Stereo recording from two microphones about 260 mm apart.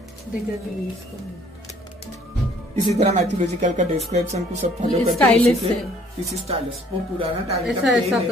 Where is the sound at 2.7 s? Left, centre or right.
Right.